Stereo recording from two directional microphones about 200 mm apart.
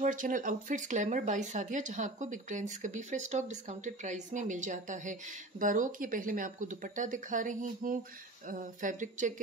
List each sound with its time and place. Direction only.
0.0 s speech: 40° right (ahead or behind)